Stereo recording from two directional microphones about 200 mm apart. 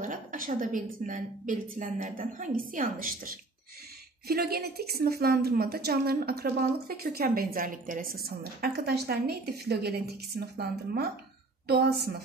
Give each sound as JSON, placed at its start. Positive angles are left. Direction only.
{"t": 0.0, "sound": "a woman's voice", "side_deg": -40}